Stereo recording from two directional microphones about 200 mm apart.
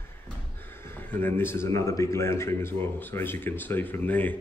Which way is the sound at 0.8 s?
10° left (ahead or behind).